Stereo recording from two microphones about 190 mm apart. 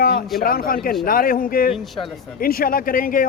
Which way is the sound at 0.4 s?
50° left (ahead or behind).